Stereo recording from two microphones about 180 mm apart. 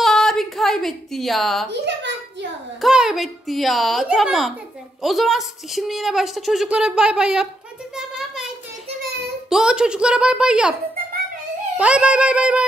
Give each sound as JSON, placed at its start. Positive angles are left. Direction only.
{"t": 0.0, "sound": "a sound", "side_deg": 5}
{"t": 1.7, "sound": "a woman's voice", "side_deg": -75}
{"t": 2.8, "sound": "a woman's voice", "side_deg": -5}
{"t": 9.5, "sound": "a woman's voice", "side_deg": -5}
{"t": 11.7, "sound": "a woman's voice", "side_deg": -5}